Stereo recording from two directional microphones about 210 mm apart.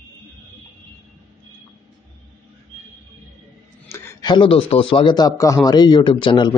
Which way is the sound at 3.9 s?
10° left (ahead or behind).